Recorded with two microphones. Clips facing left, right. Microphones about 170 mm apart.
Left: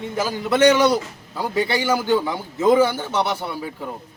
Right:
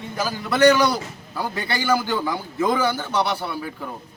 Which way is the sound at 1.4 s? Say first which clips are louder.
Left 5 dB; 20° left (ahead or behind).